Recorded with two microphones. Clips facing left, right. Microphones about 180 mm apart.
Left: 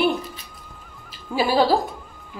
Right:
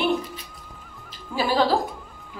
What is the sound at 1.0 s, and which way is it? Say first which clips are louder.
Music: left 3 dB; 10° left (ahead or behind).